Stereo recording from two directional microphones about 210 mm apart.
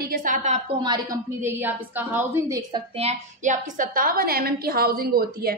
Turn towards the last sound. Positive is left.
turn(degrees=-45)  # may be behind; listen again after turning